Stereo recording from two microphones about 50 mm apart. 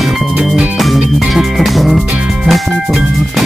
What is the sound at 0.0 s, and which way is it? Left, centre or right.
Music, centre.